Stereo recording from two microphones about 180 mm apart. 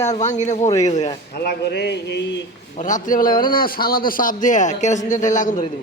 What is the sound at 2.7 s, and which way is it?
A man's voice, 45° left (ahead or behind).